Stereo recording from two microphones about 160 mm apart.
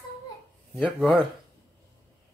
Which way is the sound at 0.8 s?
5° left (ahead or behind).